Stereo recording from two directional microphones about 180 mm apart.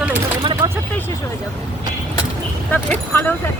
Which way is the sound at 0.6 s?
15° right (ahead or behind).